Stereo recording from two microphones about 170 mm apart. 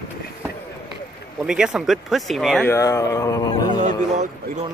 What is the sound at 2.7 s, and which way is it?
Speech, 20° left (ahead or behind).